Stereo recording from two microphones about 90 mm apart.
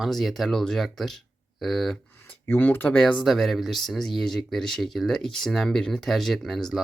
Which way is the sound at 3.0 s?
5° left (ahead or behind).